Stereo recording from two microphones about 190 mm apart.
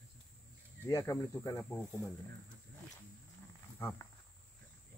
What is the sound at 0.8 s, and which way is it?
Speech, 15° left (ahead or behind).